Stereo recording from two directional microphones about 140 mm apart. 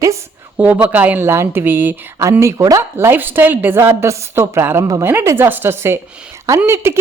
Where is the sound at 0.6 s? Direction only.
10° right (ahead or behind).